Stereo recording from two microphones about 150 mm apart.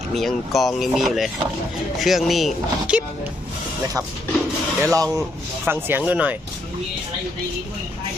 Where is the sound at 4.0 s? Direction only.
20° right (ahead or behind).